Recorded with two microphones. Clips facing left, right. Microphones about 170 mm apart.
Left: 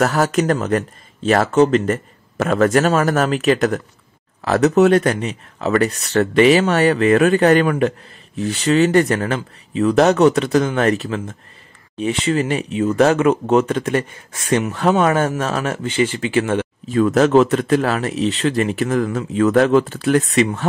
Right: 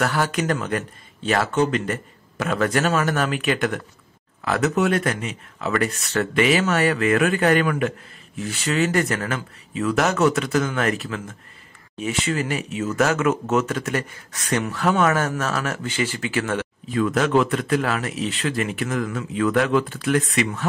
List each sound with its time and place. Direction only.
0.0 s speech: 40° left (ahead or behind)